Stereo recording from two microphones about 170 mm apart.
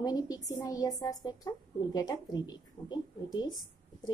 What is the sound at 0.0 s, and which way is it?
Speech, 20° left (ahead or behind).